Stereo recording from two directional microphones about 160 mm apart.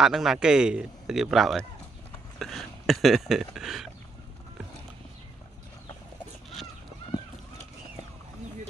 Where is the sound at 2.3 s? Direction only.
Centre (ahead or behind).